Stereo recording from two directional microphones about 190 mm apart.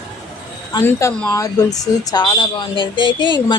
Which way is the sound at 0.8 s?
15° left (ahead or behind).